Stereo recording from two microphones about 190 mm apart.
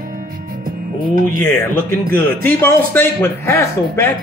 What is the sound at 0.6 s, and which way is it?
Music, 50° right (ahead or behind).